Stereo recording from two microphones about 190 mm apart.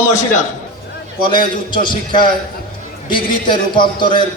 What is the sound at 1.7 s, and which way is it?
A man's voice, 25° left (ahead or behind).